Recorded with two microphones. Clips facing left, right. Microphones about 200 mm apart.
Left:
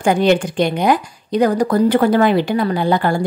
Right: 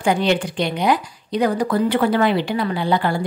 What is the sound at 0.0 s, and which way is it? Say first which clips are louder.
Speech: left 4 dB; 45° left (ahead or behind).